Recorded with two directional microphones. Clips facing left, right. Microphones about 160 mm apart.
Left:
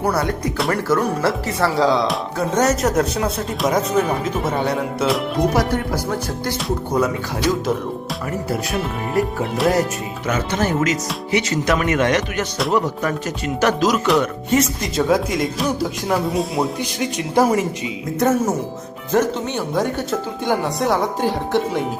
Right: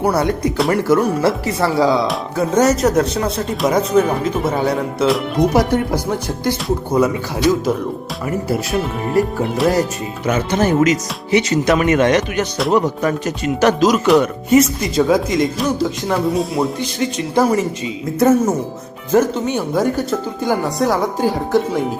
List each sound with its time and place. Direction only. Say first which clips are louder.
0.0 s speech: right 4 dB; 20° right (ahead or behind); by 5.2 s centre (ahead or behind)
5.5 s speech: right 4 dB; 20° right (ahead or behind)
6.7 s speech: right 3 dB; 5° right (ahead or behind)
8.4 s speech: right 3 dB; centre (ahead or behind)
10.2 s speech: right 4 dB; 20° right (ahead or behind)
14.2 s speech: right 5 dB; 10° right (ahead or behind)
17.0 s speech: right 1 dB; 15° left (ahead or behind)
18.2 s speech: right 4 dB; centre (ahead or behind)